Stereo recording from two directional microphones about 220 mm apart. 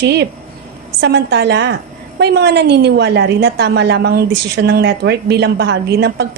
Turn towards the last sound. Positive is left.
turn(degrees=-50)  # may be behind; listen again after turning